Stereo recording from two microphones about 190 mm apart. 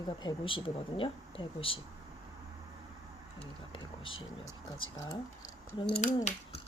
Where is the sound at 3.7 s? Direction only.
25° left (ahead or behind).